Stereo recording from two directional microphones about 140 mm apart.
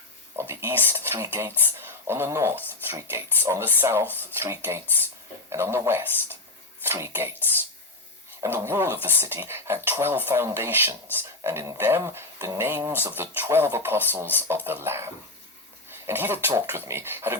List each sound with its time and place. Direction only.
0.3 s speech: 20° right (ahead or behind)
8.4 s speech: 15° right (ahead or behind)